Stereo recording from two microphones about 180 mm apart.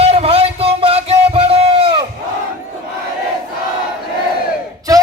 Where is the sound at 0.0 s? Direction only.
35° right (ahead or behind).